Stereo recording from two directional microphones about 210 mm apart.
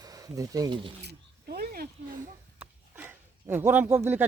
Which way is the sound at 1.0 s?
50° right (ahead or behind).